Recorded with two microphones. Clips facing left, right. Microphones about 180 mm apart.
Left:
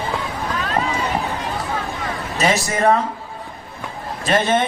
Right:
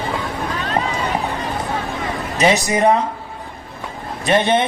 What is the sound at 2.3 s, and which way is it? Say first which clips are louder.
Speech: right 4 dB; 20° right (ahead or behind).